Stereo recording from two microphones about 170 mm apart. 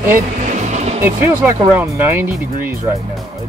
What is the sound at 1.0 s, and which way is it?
Speech, 15° right (ahead or behind).